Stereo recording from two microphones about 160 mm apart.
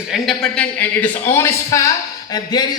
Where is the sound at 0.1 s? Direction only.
5° left (ahead or behind).